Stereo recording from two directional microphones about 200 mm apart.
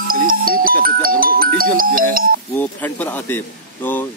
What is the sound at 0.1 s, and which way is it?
Music, 45° right (ahead or behind).